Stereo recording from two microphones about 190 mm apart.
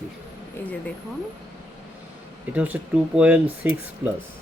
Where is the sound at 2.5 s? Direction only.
5° right (ahead or behind).